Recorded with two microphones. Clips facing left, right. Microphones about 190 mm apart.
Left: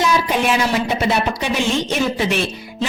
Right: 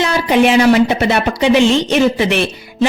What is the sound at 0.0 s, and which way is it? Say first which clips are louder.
A woman's voice: right 5 dB; 70° right (ahead or behind).